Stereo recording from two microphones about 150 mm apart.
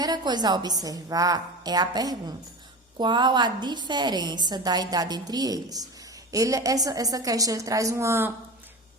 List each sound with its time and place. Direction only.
0.0 s a woman's voice: 30° right (ahead or behind)